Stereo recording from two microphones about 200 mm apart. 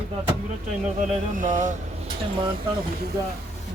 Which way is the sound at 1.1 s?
40° right (ahead or behind).